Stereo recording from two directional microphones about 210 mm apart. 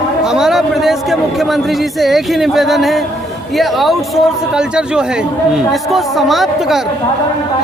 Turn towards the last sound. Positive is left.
turn(degrees=0)  # may be behind; listen again after turning